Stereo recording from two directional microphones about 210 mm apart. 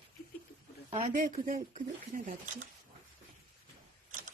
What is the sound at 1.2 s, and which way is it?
Speech, 35° right (ahead or behind).